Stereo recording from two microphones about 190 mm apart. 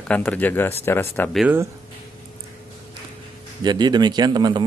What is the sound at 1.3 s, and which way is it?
Speech, 10° right (ahead or behind).